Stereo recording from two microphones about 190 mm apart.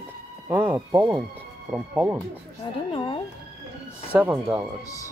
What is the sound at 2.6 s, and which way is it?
Speech, 25° left (ahead or behind).